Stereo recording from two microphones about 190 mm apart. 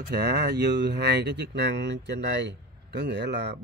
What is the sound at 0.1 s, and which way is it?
Speech, 60° right (ahead or behind).